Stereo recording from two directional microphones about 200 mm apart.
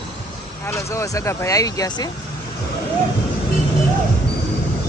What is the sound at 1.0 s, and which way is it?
Speech, 15° left (ahead or behind).